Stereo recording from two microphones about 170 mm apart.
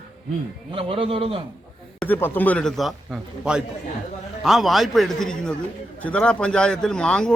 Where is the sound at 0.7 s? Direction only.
35° right (ahead or behind).